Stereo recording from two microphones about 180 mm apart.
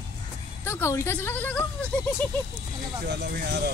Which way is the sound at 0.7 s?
15° left (ahead or behind).